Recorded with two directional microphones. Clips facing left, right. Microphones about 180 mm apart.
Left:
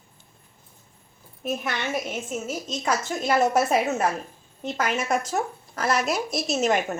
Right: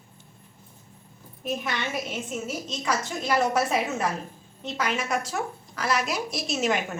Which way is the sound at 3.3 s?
50° left (ahead or behind).